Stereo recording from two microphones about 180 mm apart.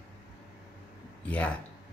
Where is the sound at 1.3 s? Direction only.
5° left (ahead or behind).